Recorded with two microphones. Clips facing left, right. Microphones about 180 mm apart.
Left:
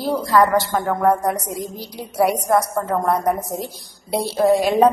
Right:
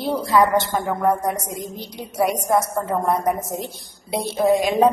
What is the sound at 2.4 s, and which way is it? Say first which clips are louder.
A woman's voice: left 2 dB; centre (ahead or behind).